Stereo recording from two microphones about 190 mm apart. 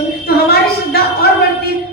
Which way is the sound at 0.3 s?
55° left (ahead or behind).